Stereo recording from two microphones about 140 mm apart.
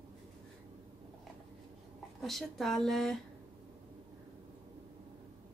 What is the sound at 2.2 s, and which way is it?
Speech, centre (ahead or behind).